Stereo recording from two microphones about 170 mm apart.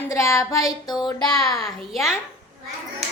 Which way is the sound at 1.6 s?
Centre (ahead or behind).